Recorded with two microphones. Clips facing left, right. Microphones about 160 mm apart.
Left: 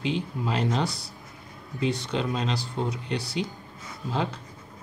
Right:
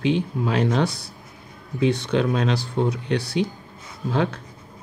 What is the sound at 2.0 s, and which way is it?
Speech, 65° right (ahead or behind).